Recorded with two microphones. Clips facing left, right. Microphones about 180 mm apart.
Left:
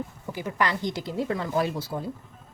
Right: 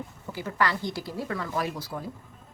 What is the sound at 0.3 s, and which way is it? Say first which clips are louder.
A woman's voice: left 1 dB; 15° left (ahead or behind).